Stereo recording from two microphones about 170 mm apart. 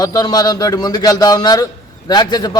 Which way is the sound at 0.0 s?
25° left (ahead or behind).